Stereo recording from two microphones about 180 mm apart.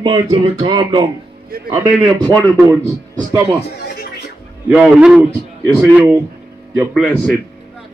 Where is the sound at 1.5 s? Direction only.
55° right (ahead or behind).